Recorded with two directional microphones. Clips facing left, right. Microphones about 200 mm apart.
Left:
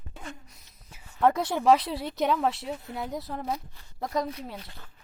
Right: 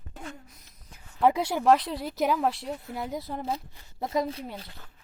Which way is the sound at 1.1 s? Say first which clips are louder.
Even; 5° right (ahead or behind).